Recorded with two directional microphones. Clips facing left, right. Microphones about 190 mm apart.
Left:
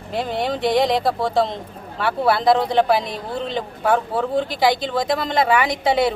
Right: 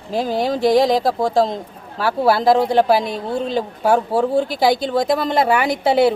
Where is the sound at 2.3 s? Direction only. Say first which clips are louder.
Right 2 dB; 5° right (ahead or behind).